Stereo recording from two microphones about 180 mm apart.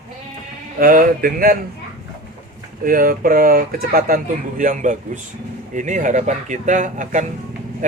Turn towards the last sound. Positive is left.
turn(degrees=-45)  # may be behind; listen again after turning